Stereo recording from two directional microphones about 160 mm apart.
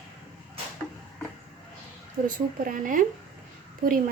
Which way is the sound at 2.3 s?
55° right (ahead or behind).